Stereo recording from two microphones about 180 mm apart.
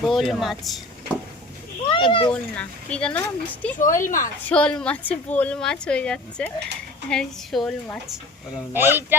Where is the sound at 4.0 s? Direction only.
45° left (ahead or behind).